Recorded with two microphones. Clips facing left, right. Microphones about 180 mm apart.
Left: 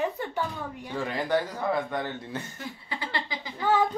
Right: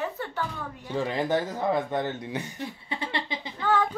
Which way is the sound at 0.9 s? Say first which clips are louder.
Right 1 dB; 20° right (ahead or behind).